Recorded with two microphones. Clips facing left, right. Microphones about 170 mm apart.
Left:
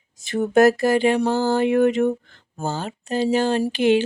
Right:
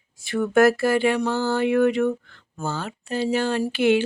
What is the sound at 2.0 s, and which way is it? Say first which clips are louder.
Speech: left 2 dB; 35° left (ahead or behind).